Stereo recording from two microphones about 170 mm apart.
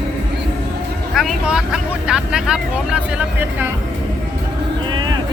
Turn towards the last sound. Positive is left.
turn(degrees=-10)  # may be behind; listen again after turning